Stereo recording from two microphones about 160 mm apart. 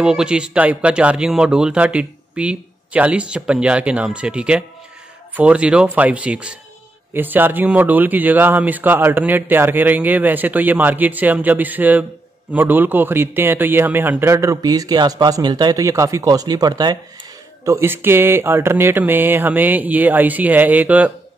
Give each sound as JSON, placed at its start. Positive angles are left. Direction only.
{"t": 0.0, "sound": "a man's voice", "side_deg": -5}